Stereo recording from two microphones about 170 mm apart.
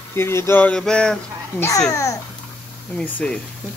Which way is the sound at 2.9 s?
10° left (ahead or behind).